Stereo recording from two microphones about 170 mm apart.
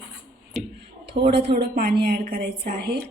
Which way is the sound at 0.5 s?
Centre (ahead or behind).